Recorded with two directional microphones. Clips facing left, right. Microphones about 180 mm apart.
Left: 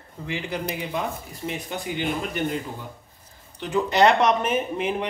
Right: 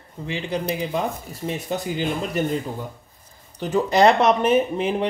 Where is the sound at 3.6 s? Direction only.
40° right (ahead or behind).